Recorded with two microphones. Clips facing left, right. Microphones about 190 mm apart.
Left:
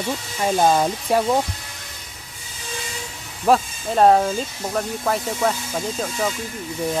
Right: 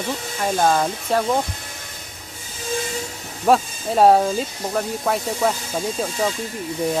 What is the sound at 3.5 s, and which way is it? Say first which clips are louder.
Speech: right 1 dB; 5° right (ahead or behind).